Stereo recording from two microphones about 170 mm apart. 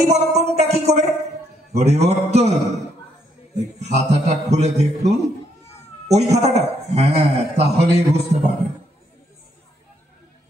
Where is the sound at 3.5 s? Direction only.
40° right (ahead or behind).